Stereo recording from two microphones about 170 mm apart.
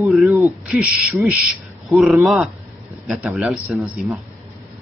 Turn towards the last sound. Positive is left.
turn(degrees=-5)  # may be behind; listen again after turning